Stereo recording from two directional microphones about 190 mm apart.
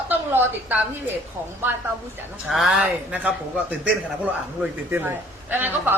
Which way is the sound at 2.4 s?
Centre (ahead or behind).